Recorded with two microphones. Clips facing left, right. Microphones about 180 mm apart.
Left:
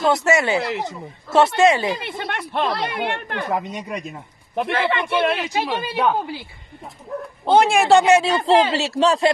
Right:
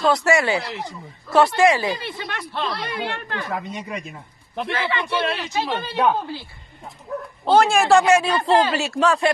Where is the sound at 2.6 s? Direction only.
60° left (ahead or behind).